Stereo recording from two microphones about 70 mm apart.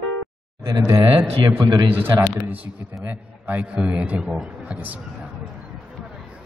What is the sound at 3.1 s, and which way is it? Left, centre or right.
A man's voice, right.